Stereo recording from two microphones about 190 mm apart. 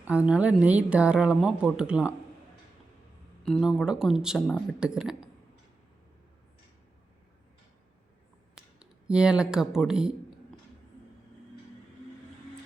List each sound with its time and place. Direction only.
0.0 s a woman's voice: 5° right (ahead or behind)
3.4 s a woman's voice: centre (ahead or behind)
8.5 s speech: 5° right (ahead or behind)